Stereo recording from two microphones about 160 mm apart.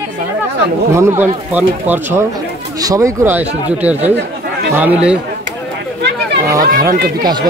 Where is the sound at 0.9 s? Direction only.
15° right (ahead or behind).